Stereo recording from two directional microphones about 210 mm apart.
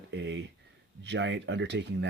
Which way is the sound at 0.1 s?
55° right (ahead or behind).